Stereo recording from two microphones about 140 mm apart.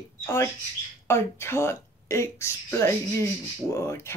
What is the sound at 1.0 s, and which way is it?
Speech, 20° left (ahead or behind).